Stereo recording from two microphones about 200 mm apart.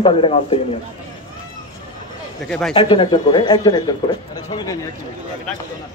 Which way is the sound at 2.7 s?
25° left (ahead or behind).